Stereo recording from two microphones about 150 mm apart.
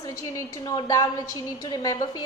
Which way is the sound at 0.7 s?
25° left (ahead or behind).